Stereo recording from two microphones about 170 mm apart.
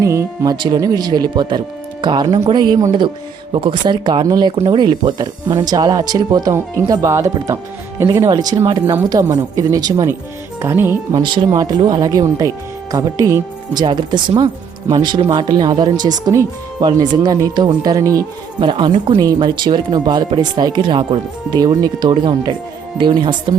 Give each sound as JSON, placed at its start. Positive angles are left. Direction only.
{"t": 0.0, "sound": "speech", "side_deg": -20}
{"t": 11.1, "sound": "speech", "side_deg": -30}